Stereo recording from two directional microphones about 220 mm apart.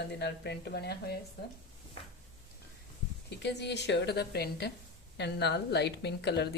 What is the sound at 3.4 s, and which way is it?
A woman's voice, 50° left (ahead or behind).